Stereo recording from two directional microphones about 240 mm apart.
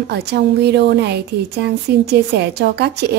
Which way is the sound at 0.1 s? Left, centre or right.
Right.